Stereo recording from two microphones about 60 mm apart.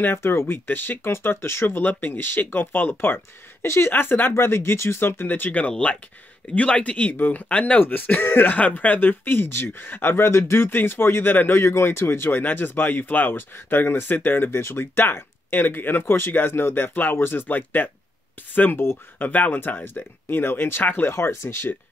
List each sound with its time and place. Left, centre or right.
0.0 s speech: left
4.3 s speech: left
5.3 s speech: left
7.8 s speech: left
21.1 s speech: left